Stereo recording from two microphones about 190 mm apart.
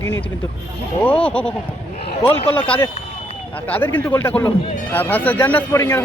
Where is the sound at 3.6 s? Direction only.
10° left (ahead or behind).